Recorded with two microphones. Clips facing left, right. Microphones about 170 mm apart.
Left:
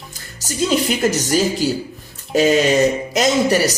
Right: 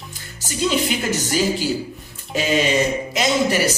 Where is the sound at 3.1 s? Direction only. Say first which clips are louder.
Left 1 dB; 40° left (ahead or behind).